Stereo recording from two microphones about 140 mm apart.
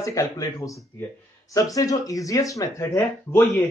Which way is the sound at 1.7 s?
25° left (ahead or behind).